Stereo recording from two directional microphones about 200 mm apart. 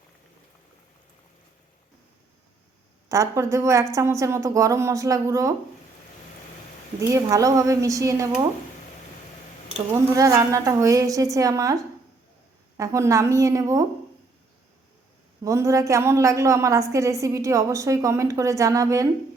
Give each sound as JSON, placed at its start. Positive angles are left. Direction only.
{"t": 3.1, "sound": "a woman's voice", "side_deg": -15}
{"t": 7.0, "sound": "a woman's voice", "side_deg": -15}
{"t": 10.2, "sound": "a woman's voice", "side_deg": -15}
{"t": 15.4, "sound": "a woman's voice", "side_deg": -15}